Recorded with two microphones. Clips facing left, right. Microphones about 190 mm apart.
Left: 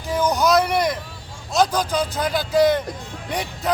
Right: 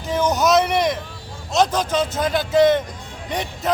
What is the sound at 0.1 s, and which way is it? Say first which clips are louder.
Vehicle: right 1 dB; centre (ahead or behind).